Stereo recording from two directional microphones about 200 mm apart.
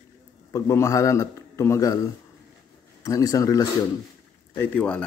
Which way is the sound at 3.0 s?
15° left (ahead or behind).